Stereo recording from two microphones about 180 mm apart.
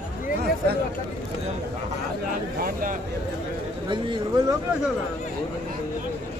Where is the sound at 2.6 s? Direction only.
50° right (ahead or behind).